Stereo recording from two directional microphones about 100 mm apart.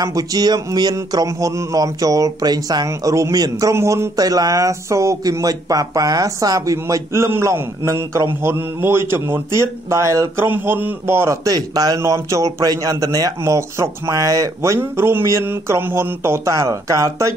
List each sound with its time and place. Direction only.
0.0 s speech: 40° right (ahead or behind)
11.4 s speech: 35° right (ahead or behind)